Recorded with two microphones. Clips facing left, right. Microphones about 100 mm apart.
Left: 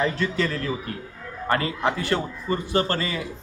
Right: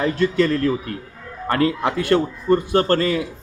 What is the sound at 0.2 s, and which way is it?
A man's voice, 45° right (ahead or behind).